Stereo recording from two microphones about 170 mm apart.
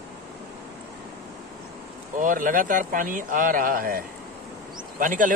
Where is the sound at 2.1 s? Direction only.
50° right (ahead or behind).